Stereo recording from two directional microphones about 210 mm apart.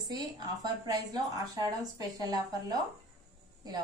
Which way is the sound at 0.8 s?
15° right (ahead or behind).